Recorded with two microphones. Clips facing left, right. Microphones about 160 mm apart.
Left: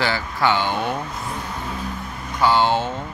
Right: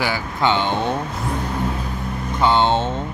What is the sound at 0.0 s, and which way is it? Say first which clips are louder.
Speech: right 1 dB; 15° right (ahead or behind).